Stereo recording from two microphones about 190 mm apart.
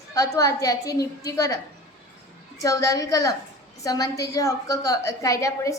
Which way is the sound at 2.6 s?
15° left (ahead or behind).